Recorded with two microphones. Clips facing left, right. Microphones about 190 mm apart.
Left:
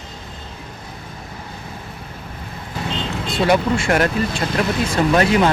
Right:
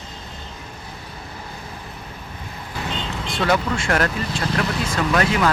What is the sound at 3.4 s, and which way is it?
Speech, 20° left (ahead or behind).